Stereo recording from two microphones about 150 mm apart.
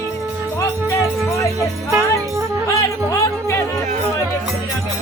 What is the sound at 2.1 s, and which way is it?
Music, 20° right (ahead or behind).